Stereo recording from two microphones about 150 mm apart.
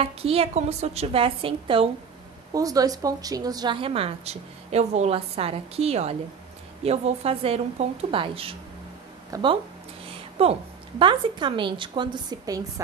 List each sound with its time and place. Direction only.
0.0 s a woman's voice: 40° right (ahead or behind)
2.5 s a woman's voice: 25° right (ahead or behind)
10.0 s a sound: 40° right (ahead or behind)
11.0 s a woman's voice: 35° right (ahead or behind)